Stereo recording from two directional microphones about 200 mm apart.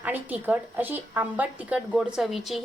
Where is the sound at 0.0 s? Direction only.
10° right (ahead or behind).